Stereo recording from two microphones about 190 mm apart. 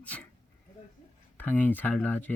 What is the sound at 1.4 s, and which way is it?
Speech, 10° left (ahead or behind).